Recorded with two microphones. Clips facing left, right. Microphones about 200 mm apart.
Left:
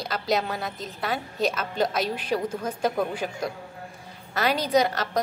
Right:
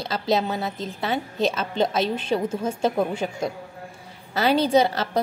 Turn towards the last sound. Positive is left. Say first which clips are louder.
# right 3 dB
turn(degrees=-30)  # may be behind; listen again after turning